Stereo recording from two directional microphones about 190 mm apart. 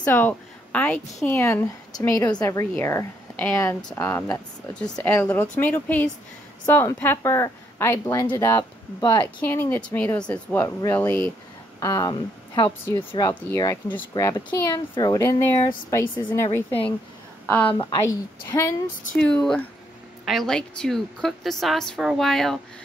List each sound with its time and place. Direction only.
0.0 s a woman's voice: 10° left (ahead or behind)
17.6 s a woman's voice: 25° left (ahead or behind)
18.5 s a woman's voice: 10° left (ahead or behind)